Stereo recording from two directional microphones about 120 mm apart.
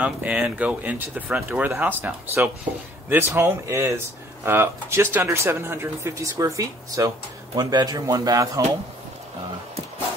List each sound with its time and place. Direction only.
0.0 s speech: 10° right (ahead or behind); by 8.6 s 25° right (ahead or behind)